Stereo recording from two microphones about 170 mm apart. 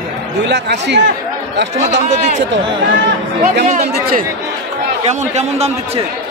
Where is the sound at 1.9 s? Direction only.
45° right (ahead or behind).